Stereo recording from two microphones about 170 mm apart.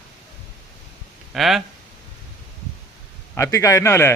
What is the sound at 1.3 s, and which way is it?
Speech, centre (ahead or behind).